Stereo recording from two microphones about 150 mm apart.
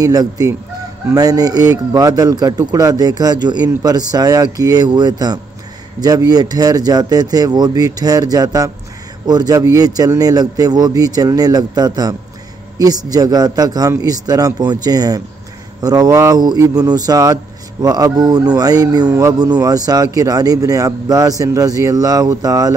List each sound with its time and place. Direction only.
0.0 s speech: 25° right (ahead or behind)